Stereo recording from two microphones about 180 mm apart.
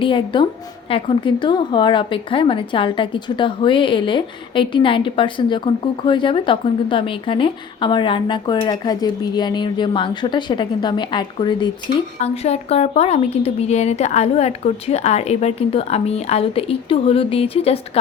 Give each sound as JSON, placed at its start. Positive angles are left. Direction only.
{"t": 0.0, "sound": "a woman's voice", "side_deg": 30}
{"t": 12.2, "sound": "a woman's voice", "side_deg": 35}